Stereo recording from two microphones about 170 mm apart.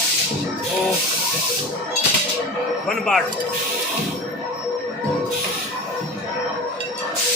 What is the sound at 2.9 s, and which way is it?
Speech, 5° left (ahead or behind).